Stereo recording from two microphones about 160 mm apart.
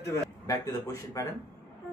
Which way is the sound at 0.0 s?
20° left (ahead or behind).